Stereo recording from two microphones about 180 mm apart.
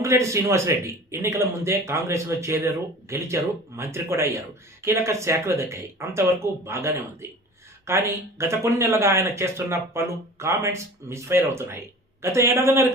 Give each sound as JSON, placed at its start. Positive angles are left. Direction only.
{"t": 0.0, "sound": "speech", "side_deg": -15}